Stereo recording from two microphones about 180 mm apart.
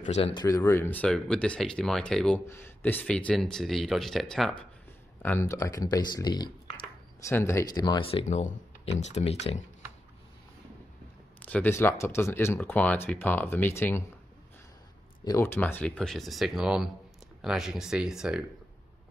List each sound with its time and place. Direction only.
0.0 s speech: 35° left (ahead or behind); by 4.6 s centre (ahead or behind)
5.2 s speech: 15° left (ahead or behind); by 9.7 s 35° left (ahead or behind)
11.3 s speech: 10° left (ahead or behind)
15.2 s speech: 15° left (ahead or behind); by 18.4 s 5° right (ahead or behind)